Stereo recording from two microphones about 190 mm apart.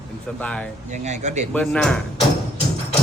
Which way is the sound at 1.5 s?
5° left (ahead or behind).